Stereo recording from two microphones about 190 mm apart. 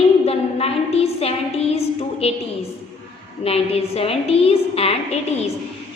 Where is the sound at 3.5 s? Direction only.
30° left (ahead or behind).